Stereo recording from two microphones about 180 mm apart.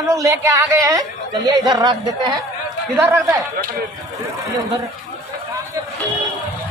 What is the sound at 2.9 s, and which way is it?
Speech, 15° right (ahead or behind).